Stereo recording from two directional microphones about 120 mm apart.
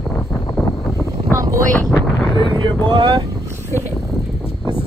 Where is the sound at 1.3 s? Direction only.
25° right (ahead or behind).